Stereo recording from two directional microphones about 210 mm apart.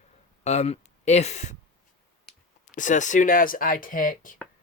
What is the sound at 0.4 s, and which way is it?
Speech, 30° left (ahead or behind).